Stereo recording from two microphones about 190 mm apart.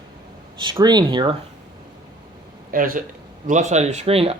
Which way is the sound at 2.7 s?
45° right (ahead or behind).